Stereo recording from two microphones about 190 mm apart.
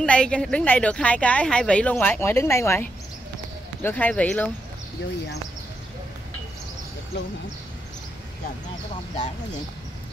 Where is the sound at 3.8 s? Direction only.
10° left (ahead or behind).